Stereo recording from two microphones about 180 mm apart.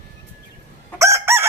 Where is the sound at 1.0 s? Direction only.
15° right (ahead or behind).